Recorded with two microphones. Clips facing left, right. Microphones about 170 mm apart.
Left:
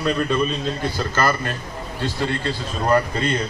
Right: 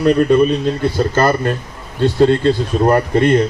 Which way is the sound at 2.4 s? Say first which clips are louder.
Right 9 dB; 55° right (ahead or behind).